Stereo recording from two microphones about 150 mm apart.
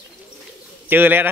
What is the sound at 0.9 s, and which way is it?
Speech, 15° right (ahead or behind).